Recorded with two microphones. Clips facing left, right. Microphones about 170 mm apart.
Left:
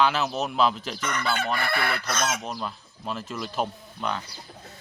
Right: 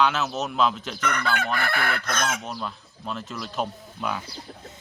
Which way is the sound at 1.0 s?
60° right (ahead or behind).